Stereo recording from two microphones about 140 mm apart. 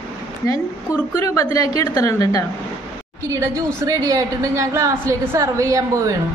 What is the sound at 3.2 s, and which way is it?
A woman's voice, 20° right (ahead or behind).